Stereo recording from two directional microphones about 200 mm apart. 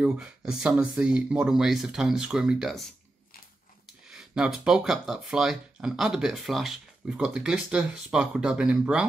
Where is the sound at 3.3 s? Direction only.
45° left (ahead or behind).